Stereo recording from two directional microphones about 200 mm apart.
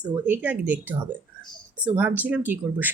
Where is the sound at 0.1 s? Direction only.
10° right (ahead or behind).